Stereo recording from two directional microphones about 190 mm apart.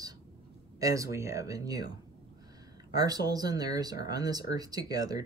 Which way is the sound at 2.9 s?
20° right (ahead or behind).